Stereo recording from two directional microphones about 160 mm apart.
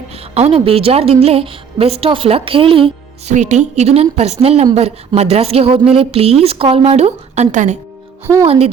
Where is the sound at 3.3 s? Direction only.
45° right (ahead or behind).